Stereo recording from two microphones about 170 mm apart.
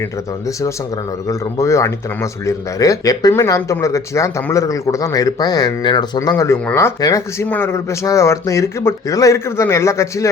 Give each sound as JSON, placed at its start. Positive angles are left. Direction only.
{"t": 1.3, "sound": "speech", "side_deg": 15}